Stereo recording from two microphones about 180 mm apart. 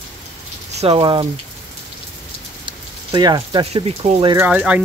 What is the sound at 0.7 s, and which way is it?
Speech, 30° right (ahead or behind).